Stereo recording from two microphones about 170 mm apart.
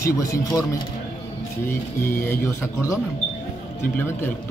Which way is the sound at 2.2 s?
15° left (ahead or behind).